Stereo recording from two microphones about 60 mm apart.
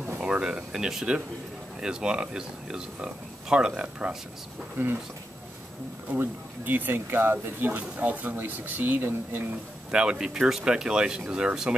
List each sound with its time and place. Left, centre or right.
0.2 s speech: centre
6.1 s speech: right
9.8 s speech: centre